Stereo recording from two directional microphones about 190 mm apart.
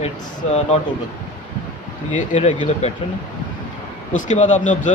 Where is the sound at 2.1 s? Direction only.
40° left (ahead or behind).